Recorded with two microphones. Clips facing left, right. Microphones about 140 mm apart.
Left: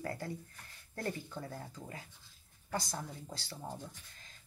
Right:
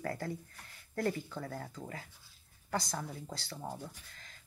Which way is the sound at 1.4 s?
45° right (ahead or behind).